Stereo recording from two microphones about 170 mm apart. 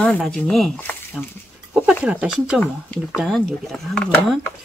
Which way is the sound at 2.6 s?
10° left (ahead or behind).